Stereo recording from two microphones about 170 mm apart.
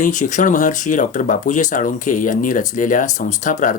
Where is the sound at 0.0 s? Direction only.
45° left (ahead or behind).